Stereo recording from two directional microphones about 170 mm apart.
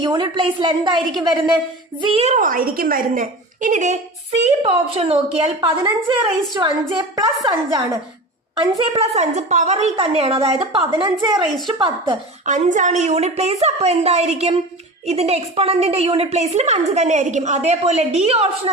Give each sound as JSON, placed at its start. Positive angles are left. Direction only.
{"t": 0.0, "sound": "a woman's voice", "side_deg": -25}
{"t": 2.0, "sound": "a woman's voice", "side_deg": -30}
{"t": 2.3, "sound": "a woman's voice", "side_deg": -55}
{"t": 8.8, "sound": "a woman's voice", "side_deg": -35}
{"t": 12.5, "sound": "a woman's voice", "side_deg": -45}